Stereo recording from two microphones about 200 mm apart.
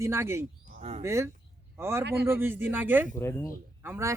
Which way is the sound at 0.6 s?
35° right (ahead or behind).